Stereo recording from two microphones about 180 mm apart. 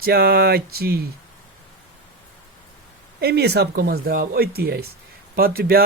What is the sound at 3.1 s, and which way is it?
Speech, 65° right (ahead or behind).